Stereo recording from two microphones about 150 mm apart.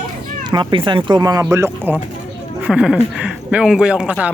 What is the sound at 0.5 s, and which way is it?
Speech, 30° right (ahead or behind).